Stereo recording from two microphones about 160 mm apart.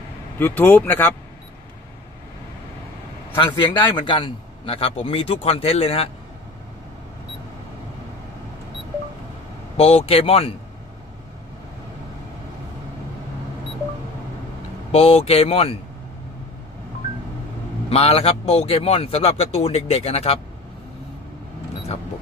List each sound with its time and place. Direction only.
0.4 s speech: 10° left (ahead or behind)
3.5 s a man's voice: 30° left (ahead or behind)
9.8 s a man's voice: 40° left (ahead or behind)
14.9 s a man's voice: 40° left (ahead or behind)
17.8 s a man's voice: 40° left (ahead or behind)